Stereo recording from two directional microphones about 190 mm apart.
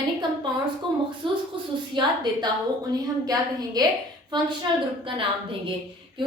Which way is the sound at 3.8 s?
20° right (ahead or behind).